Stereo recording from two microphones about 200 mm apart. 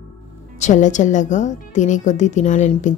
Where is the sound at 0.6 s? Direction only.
40° left (ahead or behind).